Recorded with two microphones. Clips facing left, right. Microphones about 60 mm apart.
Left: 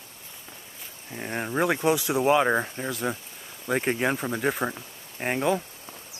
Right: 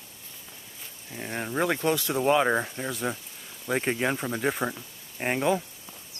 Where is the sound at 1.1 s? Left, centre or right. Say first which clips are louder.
Left 2 dB; centre.